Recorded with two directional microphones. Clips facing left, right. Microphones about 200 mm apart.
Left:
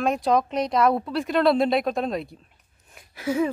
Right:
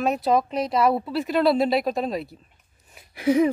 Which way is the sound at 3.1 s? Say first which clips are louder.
Right 5 dB; 15° right (ahead or behind).